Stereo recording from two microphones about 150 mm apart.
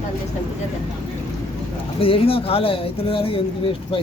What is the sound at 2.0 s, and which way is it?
Speech, 40° left (ahead or behind).